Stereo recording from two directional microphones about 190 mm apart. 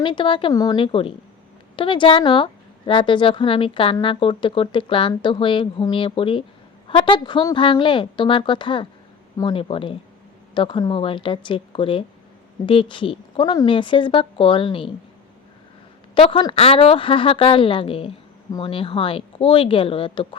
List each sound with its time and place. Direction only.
0.0 s a woman's voice: 25° left (ahead or behind)
16.1 s a woman's voice: 25° left (ahead or behind)